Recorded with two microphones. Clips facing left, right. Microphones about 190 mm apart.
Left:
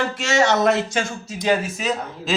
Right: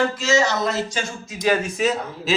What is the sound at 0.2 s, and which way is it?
Speech, 70° left (ahead or behind).